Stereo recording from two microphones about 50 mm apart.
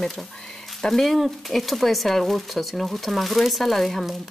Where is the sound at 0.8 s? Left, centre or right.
Centre.